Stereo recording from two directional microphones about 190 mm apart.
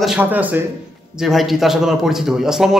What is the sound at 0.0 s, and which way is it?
A man's voice, 5° right (ahead or behind).